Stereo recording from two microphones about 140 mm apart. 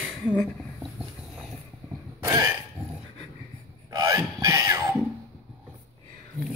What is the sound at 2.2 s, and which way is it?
Burping, 25° right (ahead or behind).